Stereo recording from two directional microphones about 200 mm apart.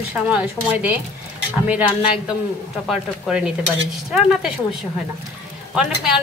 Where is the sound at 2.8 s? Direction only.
5° right (ahead or behind).